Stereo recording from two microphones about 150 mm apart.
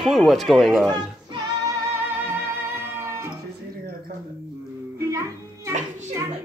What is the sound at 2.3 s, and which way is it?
Music, 15° right (ahead or behind).